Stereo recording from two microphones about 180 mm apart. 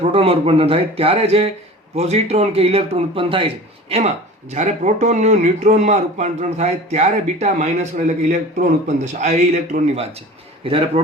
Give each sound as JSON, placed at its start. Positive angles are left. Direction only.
{"t": 0.0, "sound": "a man's voice", "side_deg": -35}